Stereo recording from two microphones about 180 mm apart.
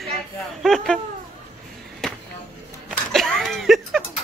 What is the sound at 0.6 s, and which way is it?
Speech, centre (ahead or behind).